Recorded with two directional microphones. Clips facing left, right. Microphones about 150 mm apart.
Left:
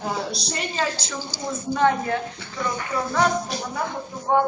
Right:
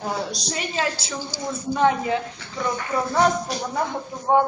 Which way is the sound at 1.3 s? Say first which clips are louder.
Even; 15° right (ahead or behind).